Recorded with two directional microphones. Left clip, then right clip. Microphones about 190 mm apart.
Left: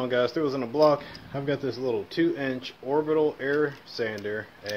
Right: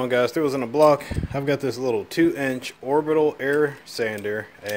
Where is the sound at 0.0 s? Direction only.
45° right (ahead or behind).